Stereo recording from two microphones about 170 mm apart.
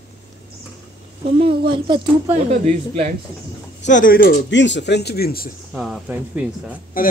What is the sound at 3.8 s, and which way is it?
Speech, 50° left (ahead or behind).